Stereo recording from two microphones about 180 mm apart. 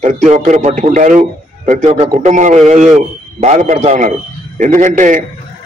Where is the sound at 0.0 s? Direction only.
40° right (ahead or behind).